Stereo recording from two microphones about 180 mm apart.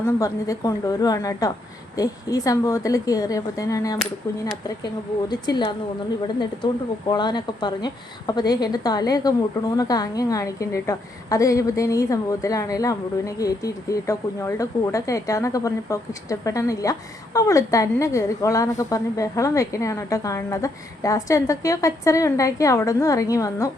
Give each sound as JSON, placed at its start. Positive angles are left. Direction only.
{"t": 0.0, "sound": "a woman's voice", "side_deg": 20}
{"t": 5.3, "sound": "a woman's voice", "side_deg": 25}